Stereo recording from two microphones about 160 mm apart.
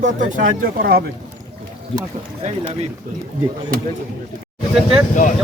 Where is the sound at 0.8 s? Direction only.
75° right (ahead or behind).